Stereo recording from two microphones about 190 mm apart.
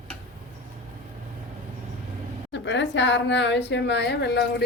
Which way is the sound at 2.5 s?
70° left (ahead or behind).